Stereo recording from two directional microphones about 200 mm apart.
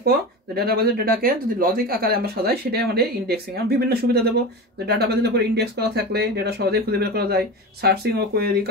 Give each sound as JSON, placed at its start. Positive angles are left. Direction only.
{"t": 0.0, "sound": "speech", "side_deg": -50}